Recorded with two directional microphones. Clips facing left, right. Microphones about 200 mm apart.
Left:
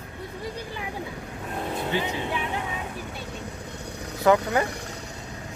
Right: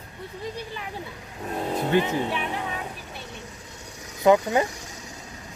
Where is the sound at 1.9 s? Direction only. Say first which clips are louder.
Right 7 dB; 50° right (ahead or behind).